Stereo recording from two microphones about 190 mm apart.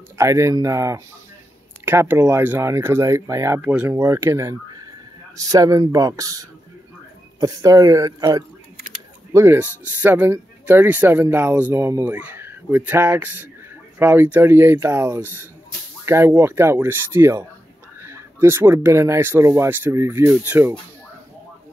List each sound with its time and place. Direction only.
0.2 s speech: 15° right (ahead or behind)
8.7 s a sound: 45° right (ahead or behind)
9.3 s speech: 15° right (ahead or behind)